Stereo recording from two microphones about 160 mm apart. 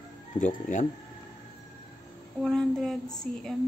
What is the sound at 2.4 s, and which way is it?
Speech, 5° left (ahead or behind).